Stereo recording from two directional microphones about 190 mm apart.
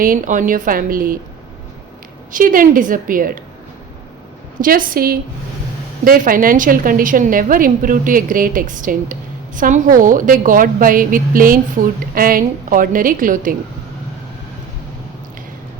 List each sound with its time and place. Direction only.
0.0 s a woman's voice: 45° right (ahead or behind)
2.3 s a woman's voice: 45° right (ahead or behind)
4.6 s a woman's voice: 45° right (ahead or behind)